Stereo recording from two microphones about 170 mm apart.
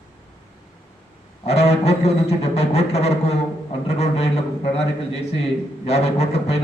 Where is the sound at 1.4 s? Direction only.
40° left (ahead or behind).